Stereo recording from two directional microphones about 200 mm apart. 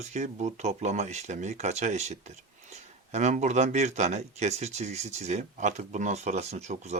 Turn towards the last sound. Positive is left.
turn(degrees=-35)  # may be behind; listen again after turning